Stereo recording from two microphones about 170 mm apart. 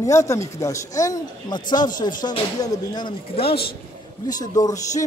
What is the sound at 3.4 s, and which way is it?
Speech, 65° left (ahead or behind).